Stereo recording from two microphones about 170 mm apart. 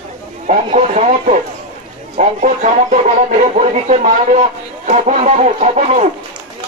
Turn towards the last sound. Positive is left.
turn(degrees=-45)  # may be behind; listen again after turning